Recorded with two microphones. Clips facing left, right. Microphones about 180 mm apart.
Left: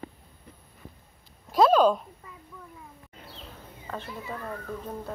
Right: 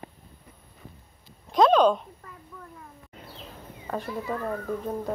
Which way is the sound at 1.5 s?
5° left (ahead or behind).